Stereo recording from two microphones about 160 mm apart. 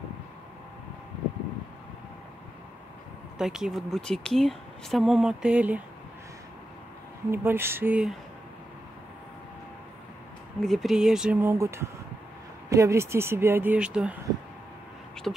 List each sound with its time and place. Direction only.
3.3 s speech: 5° right (ahead or behind)
7.2 s speech: 15° right (ahead or behind)
10.6 s speech: centre (ahead or behind)
11.4 s speech: 15° right (ahead or behind)
15.3 s speech: centre (ahead or behind)